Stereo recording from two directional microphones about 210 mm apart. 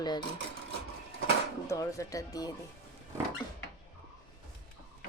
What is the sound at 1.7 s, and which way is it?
Speech, 15° left (ahead or behind).